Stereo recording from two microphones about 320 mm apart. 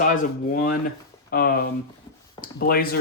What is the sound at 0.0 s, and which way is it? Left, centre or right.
Speech, left.